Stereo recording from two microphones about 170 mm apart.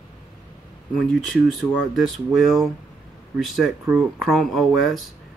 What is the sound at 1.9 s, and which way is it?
Speech, centre (ahead or behind).